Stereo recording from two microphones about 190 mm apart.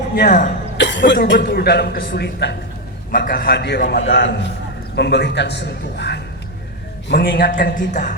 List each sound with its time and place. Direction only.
0.1 s speech: 40° left (ahead or behind)
0.8 s a man's voice: 70° left (ahead or behind)
3.1 s a man's voice: 50° left (ahead or behind)
7.1 s a man's voice: 50° left (ahead or behind)